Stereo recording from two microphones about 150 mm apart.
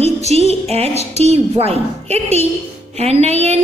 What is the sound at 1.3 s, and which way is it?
A woman's voice, 45° right (ahead or behind).